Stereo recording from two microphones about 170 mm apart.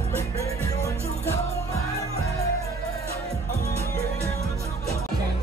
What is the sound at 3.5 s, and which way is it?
Music, 65° left (ahead or behind).